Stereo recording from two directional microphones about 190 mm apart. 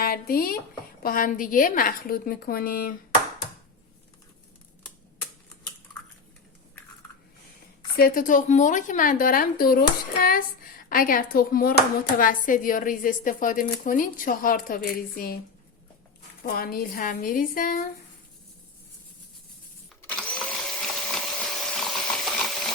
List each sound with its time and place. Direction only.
0.0 s speech: 50° left (ahead or behind)
7.9 s speech: 50° left (ahead or behind)
10.8 s speech: 50° left (ahead or behind)
16.4 s speech: 50° left (ahead or behind)
20.0 s vacuum cleaner: 10° left (ahead or behind)